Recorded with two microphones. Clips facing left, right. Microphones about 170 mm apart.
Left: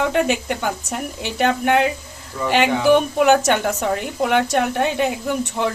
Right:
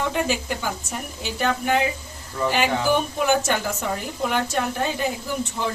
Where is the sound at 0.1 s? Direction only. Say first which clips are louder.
Left 5 dB; 65° left (ahead or behind).